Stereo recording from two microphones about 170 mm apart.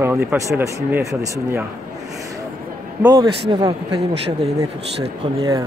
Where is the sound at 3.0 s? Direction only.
25° right (ahead or behind).